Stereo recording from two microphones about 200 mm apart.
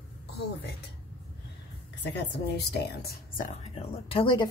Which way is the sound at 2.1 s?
55° left (ahead or behind).